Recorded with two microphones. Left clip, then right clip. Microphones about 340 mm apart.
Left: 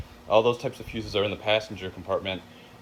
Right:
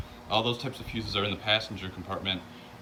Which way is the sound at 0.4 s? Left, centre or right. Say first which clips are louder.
Left 6 dB; centre.